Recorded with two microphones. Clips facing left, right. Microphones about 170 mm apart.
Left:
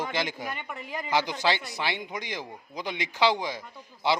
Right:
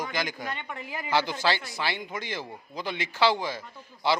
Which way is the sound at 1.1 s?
15° left (ahead or behind).